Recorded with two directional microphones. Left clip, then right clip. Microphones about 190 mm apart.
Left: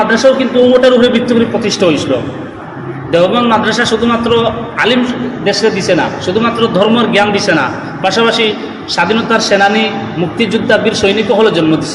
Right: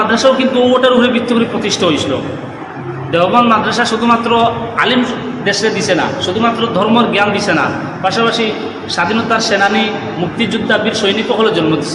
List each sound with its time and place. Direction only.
0.1 s a man's voice: 10° left (ahead or behind)
3.1 s a man's voice: 15° left (ahead or behind)